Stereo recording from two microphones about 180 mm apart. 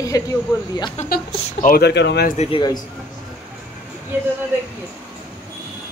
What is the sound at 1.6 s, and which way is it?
Speech, 60° left (ahead or behind).